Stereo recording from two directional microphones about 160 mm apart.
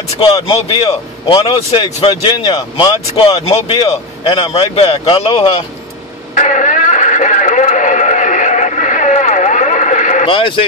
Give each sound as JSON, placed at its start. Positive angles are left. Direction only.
{"t": 0.2, "sound": "speech", "side_deg": 30}
{"t": 6.3, "sound": "radio", "side_deg": 50}
{"t": 10.2, "sound": "speech", "side_deg": 30}